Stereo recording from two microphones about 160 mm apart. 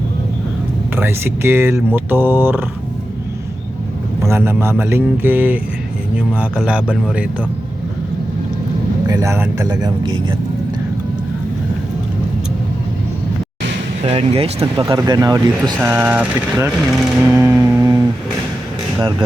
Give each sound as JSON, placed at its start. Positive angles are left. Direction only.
{"t": 0.9, "sound": "speech", "side_deg": -15}
{"t": 4.2, "sound": "speech", "side_deg": -15}
{"t": 6.6, "sound": "speech", "side_deg": -5}
{"t": 9.0, "sound": "speech", "side_deg": -20}
{"t": 14.0, "sound": "speech", "side_deg": -35}
{"t": 14.9, "sound": "speech", "side_deg": -25}
{"t": 15.8, "sound": "speech", "side_deg": -15}